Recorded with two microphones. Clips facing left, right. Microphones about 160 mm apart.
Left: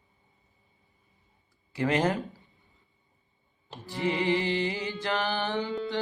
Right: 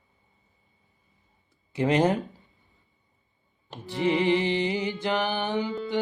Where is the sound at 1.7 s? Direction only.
20° right (ahead or behind).